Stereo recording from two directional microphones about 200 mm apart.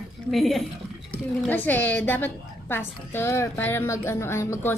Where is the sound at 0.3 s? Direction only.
Centre (ahead or behind).